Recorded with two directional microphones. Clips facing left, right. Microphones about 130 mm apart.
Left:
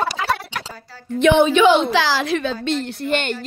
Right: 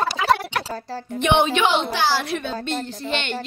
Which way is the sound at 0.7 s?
40° right (ahead or behind).